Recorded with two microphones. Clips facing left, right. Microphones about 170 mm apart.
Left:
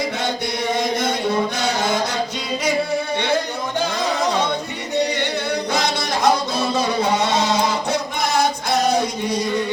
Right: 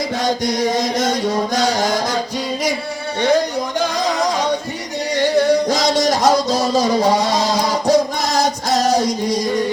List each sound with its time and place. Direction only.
1.5 s music: 40° right (ahead or behind)
5.4 s music: 40° right (ahead or behind)